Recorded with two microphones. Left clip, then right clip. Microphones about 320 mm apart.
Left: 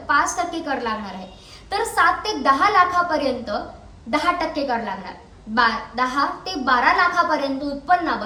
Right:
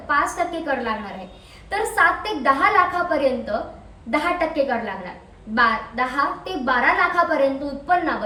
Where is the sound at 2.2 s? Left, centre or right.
Centre.